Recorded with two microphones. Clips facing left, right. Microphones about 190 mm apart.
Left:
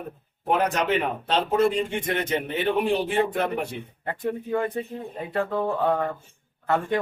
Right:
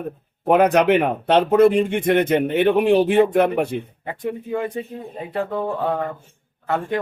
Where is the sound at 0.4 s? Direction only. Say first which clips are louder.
Right 8 dB; 65° right (ahead or behind).